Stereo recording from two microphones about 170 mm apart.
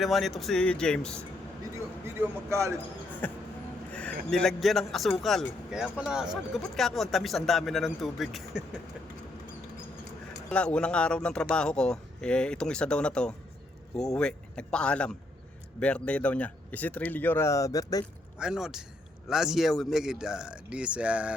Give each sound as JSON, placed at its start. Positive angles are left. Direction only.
{"t": 0.0, "sound": "speech", "side_deg": 0}
{"t": 2.1, "sound": "a man's voice", "side_deg": -15}
{"t": 3.1, "sound": "a sound", "side_deg": 10}
{"t": 3.9, "sound": "speech", "side_deg": 5}
{"t": 10.5, "sound": "speech", "side_deg": 5}
{"t": 18.3, "sound": "speech", "side_deg": -5}